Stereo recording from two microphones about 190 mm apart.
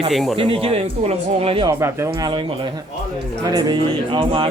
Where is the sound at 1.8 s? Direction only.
15° right (ahead or behind).